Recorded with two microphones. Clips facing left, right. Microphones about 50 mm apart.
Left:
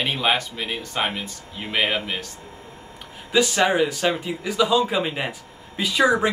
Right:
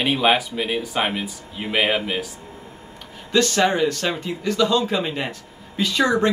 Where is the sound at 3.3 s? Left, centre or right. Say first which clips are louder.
Even; centre.